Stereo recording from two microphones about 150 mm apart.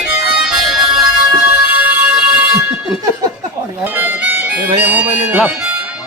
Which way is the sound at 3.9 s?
10° right (ahead or behind).